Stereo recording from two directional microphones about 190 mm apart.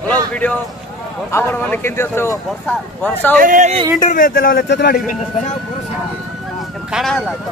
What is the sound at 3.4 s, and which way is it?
Speech, 40° right (ahead or behind).